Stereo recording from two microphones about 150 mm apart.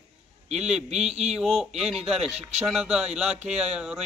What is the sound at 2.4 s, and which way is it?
Speech, 45° right (ahead or behind).